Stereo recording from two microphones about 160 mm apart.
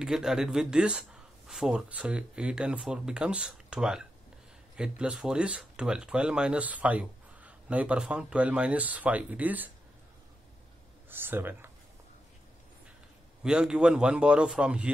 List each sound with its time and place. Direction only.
0.0 s speech: 5° right (ahead or behind)
11.1 s speech: 15° right (ahead or behind)
13.4 s speech: 5° right (ahead or behind)